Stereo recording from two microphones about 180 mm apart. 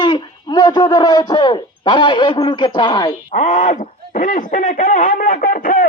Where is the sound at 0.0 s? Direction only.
25° left (ahead or behind).